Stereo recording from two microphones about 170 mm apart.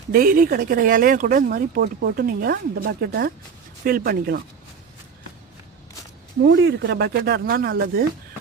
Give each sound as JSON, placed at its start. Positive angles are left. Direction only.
{"t": 0.1, "sound": "speech", "side_deg": -55}
{"t": 6.4, "sound": "speech", "side_deg": -90}